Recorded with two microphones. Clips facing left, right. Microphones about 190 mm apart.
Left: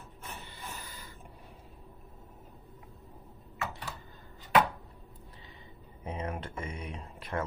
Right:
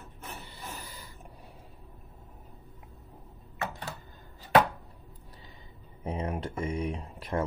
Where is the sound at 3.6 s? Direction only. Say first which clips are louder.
Right 2 dB; 40° right (ahead or behind).